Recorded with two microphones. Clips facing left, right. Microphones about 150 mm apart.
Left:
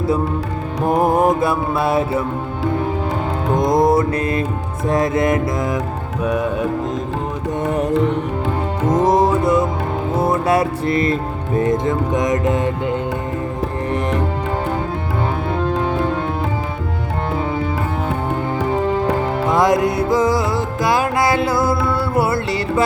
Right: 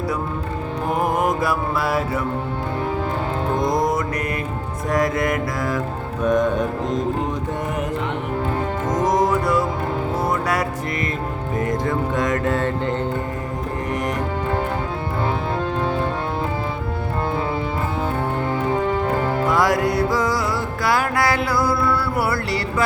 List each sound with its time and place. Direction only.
0.9 s mantra: 35° left (ahead or behind)
3.5 s music: 20° left (ahead or behind)
6.2 s music: 10° left (ahead or behind)
8.9 s music: 30° left (ahead or behind); by 13.0 s 10° left (ahead or behind)
19.5 s music: 20° left (ahead or behind)